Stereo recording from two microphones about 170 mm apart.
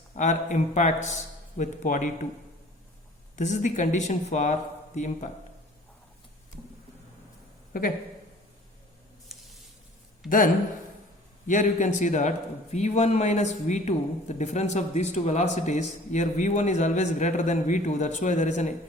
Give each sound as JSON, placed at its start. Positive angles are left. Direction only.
{"t": 0.2, "sound": "a man's voice", "side_deg": 45}
{"t": 3.3, "sound": "a man's voice", "side_deg": 45}
{"t": 7.7, "sound": "a man's voice", "side_deg": 55}
{"t": 9.3, "sound": "a sound", "side_deg": 0}
{"t": 10.2, "sound": "a man's voice", "side_deg": 50}